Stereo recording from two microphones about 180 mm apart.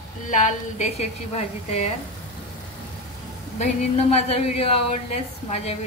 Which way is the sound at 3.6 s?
35° left (ahead or behind).